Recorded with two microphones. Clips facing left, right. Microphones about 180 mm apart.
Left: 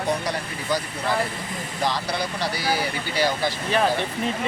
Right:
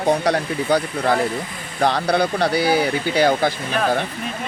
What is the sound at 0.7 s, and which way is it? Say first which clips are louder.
Speech: right 6 dB; 60° right (ahead or behind).